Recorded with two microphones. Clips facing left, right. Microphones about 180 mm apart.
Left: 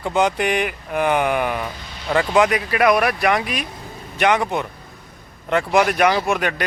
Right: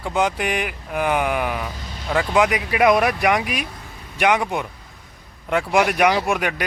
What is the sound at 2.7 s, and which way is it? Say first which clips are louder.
Speech: even; 20° right (ahead or behind).